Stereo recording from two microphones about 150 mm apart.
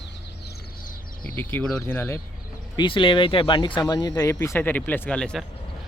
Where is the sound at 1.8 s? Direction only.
15° left (ahead or behind).